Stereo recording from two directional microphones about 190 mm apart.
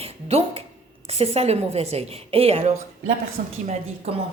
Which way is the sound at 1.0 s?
30° right (ahead or behind).